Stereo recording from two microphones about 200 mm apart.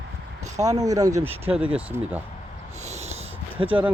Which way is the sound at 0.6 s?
15° right (ahead or behind).